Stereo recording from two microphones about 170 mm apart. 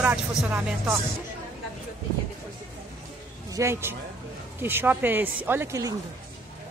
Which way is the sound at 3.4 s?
20° right (ahead or behind).